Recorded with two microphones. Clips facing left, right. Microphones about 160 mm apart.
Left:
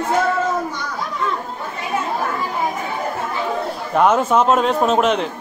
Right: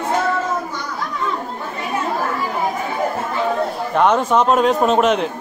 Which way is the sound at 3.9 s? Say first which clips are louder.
Left 1 dB; 5° left (ahead or behind).